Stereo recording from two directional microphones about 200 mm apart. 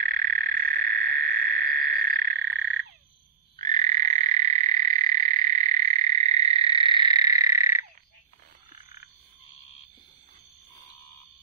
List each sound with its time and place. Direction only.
0.0 s frog: 45° right (ahead or behind)
3.5 s frog: 40° right (ahead or behind); by 7.8 s 15° right (ahead or behind)